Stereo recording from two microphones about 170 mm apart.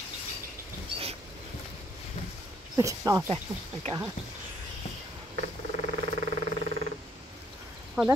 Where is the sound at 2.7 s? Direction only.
20° right (ahead or behind).